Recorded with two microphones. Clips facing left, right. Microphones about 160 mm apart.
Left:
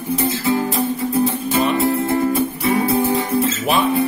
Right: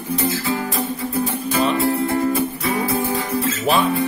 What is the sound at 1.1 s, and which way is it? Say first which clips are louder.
Music: left 3 dB; 25° left (ahead or behind).